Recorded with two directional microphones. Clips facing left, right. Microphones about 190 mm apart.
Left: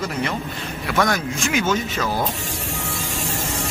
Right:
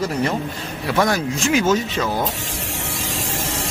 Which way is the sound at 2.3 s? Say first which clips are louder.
Even; 90° right.